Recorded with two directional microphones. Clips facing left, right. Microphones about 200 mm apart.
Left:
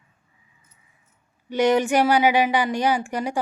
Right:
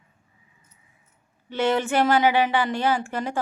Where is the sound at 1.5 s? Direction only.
15° left (ahead or behind).